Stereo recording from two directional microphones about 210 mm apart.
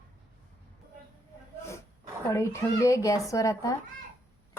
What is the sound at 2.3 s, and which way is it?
A woman's voice, 15° left (ahead or behind).